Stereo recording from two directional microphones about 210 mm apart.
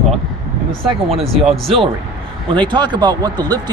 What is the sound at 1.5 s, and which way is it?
Speech, 25° right (ahead or behind).